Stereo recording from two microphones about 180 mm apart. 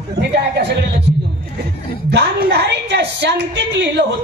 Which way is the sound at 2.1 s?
70° right (ahead or behind).